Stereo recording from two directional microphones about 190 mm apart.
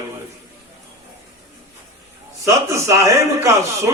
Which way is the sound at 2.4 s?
15° right (ahead or behind).